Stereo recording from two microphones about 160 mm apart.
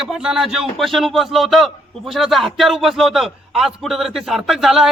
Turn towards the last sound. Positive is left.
turn(degrees=0)  # may be behind; listen again after turning